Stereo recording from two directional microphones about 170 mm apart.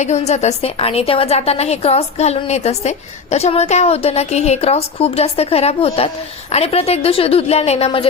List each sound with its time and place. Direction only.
0.0 s a woman's voice: 40° left (ahead or behind)